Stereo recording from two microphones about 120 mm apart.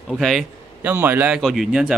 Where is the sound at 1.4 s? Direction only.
Centre (ahead or behind).